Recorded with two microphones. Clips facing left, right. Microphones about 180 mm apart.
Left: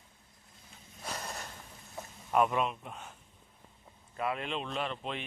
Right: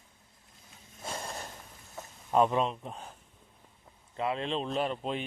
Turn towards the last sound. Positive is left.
turn(degrees=-35)  # may be behind; listen again after turning